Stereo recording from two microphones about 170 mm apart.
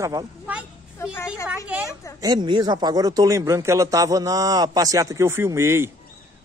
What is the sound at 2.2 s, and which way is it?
A man's voice, 25° right (ahead or behind).